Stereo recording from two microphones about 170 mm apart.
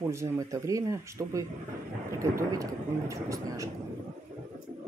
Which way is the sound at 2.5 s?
20° right (ahead or behind).